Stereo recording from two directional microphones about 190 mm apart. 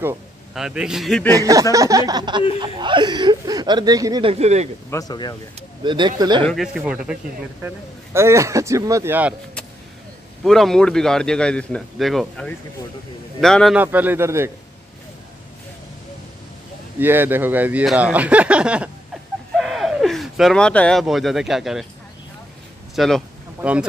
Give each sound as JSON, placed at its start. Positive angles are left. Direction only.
{"t": 0.6, "sound": "a man's voice", "side_deg": -5}
{"t": 1.3, "sound": "speech", "side_deg": -15}
{"t": 4.9, "sound": "speech", "side_deg": 20}
{"t": 5.9, "sound": "speech", "side_deg": -25}
{"t": 6.4, "sound": "a man's voice", "side_deg": 0}
{"t": 10.4, "sound": "a man's voice", "side_deg": 0}
{"t": 13.7, "sound": "speech", "side_deg": -10}
{"t": 17.0, "sound": "speech", "side_deg": -10}
{"t": 22.9, "sound": "speech", "side_deg": 0}